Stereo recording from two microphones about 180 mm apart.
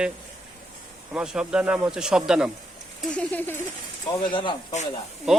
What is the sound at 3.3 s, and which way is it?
Speech, 10° left (ahead or behind).